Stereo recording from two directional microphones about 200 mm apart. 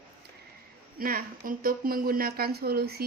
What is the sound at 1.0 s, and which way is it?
A woman's voice, 45° right (ahead or behind).